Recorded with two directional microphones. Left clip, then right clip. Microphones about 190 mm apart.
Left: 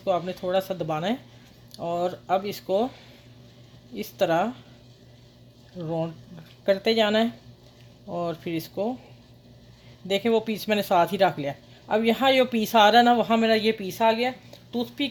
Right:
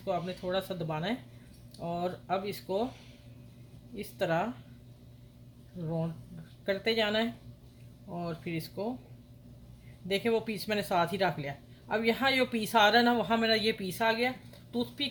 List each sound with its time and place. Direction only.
0.0 s speech: 40° left (ahead or behind)
3.9 s speech: 45° left (ahead or behind)
6.7 s speech: 40° left (ahead or behind)
10.1 s speech: 40° left (ahead or behind)